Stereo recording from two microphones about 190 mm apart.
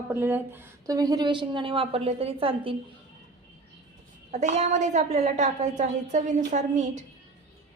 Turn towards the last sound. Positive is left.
turn(degrees=-40)  # may be behind; listen again after turning